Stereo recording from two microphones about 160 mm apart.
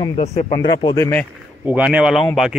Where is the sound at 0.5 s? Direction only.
25° left (ahead or behind).